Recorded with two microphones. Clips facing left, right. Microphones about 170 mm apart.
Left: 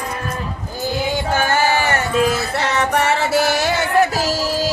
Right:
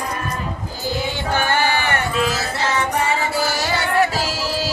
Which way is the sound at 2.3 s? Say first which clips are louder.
Left 2 dB; 65° left (ahead or behind).